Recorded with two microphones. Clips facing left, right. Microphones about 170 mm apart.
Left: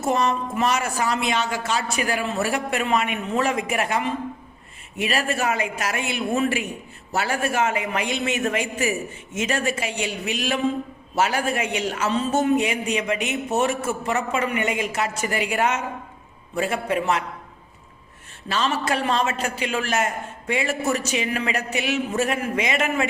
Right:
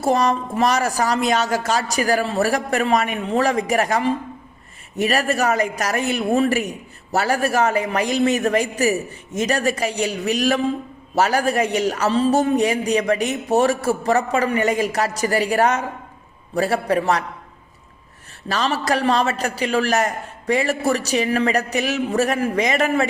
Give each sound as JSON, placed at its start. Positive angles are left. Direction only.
{"t": 0.0, "sound": "a man's voice", "side_deg": -35}
{"t": 18.4, "sound": "a man's voice", "side_deg": -40}